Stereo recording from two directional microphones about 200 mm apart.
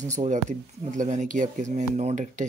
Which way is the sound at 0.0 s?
35° right (ahead or behind).